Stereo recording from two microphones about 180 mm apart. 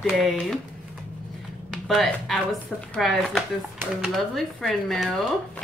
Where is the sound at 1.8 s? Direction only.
Centre (ahead or behind).